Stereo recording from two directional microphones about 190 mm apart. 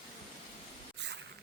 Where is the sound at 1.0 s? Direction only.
65° right (ahead or behind).